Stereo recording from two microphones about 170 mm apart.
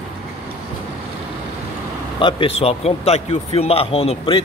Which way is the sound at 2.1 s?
30° left (ahead or behind).